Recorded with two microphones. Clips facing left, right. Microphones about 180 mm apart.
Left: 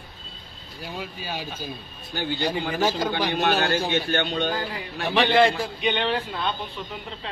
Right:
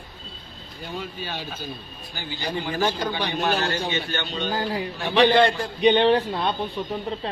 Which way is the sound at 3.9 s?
60° left (ahead or behind).